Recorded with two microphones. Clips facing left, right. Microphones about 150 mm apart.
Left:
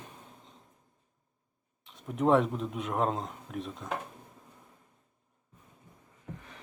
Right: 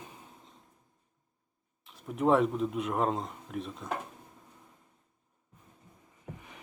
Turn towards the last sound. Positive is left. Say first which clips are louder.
# left 1 dB
turn(degrees=-15)  # may be behind; listen again after turning